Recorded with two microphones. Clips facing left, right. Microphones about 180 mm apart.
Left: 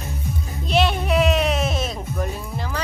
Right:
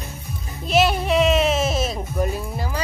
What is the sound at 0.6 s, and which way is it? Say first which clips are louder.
Music: right 2 dB; 5° right (ahead or behind).